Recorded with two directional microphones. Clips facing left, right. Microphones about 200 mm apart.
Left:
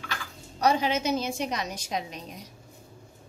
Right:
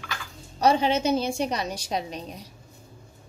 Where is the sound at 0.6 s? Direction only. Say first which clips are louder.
Right 3 dB; 30° right (ahead or behind).